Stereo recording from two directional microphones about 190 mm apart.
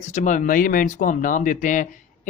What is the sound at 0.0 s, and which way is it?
Speech, 40° left (ahead or behind).